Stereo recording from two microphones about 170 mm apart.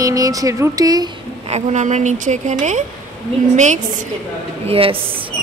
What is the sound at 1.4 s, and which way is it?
A woman's voice, 40° right (ahead or behind).